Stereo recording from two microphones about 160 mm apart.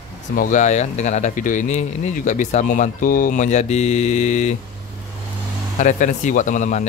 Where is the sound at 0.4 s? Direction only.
50° left (ahead or behind).